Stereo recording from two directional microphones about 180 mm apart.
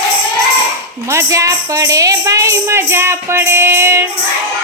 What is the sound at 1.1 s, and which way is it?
Speech, 15° right (ahead or behind).